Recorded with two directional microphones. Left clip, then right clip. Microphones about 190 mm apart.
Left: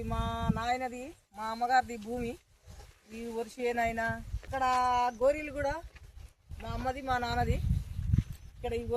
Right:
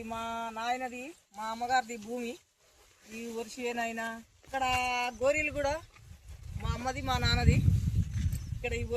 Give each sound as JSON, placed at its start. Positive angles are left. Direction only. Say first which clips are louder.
{"t": 0.0, "sound": "speech", "louder": "even", "side_deg": 5}
{"t": 4.5, "sound": "speech", "louder": "left 2 dB", "side_deg": 60}
{"t": 8.6, "sound": "speech", "louder": "left 1 dB", "side_deg": 65}